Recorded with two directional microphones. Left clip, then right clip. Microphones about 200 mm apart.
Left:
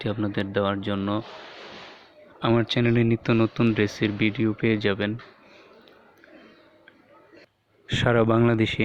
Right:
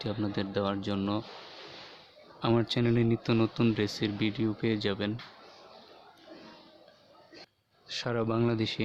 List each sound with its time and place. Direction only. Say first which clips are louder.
0.0 s speech: left 6 dB; 20° left (ahead or behind)
2.4 s speech: left 6 dB; 15° left (ahead or behind)
8.0 s speech: left 10 dB; 25° left (ahead or behind)